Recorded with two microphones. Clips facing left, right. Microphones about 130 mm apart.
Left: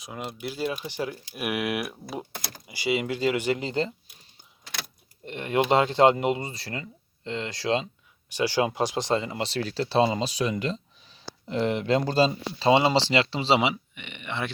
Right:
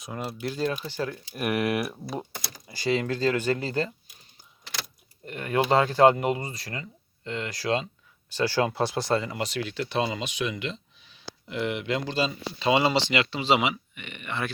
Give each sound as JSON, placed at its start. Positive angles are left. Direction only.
{"t": 0.0, "sound": "speech", "side_deg": 0}
{"t": 2.6, "sound": "speech", "side_deg": 10}
{"t": 5.2, "sound": "speech", "side_deg": 25}